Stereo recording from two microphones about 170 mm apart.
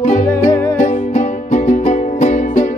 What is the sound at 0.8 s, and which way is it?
Music, 45° left (ahead or behind).